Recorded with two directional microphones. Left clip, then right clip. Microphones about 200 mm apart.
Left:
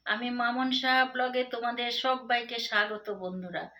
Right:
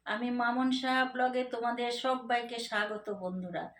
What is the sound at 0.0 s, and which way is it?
A woman's voice, centre (ahead or behind).